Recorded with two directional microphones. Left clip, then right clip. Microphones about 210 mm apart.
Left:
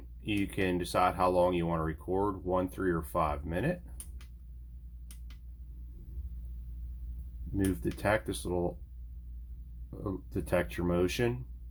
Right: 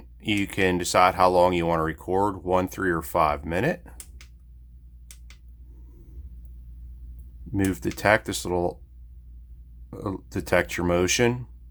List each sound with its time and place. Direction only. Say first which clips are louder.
0.2 s speech: right 9 dB; 25° right (ahead or behind)
7.5 s speech: right 6 dB; 25° right (ahead or behind)
9.9 s speech: right 6 dB; 25° right (ahead or behind)